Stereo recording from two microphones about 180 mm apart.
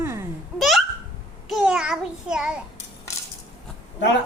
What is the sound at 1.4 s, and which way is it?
Child singing, centre (ahead or behind).